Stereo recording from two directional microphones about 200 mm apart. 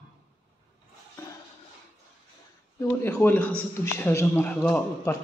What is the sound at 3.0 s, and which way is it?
A man's voice, 10° left (ahead or behind).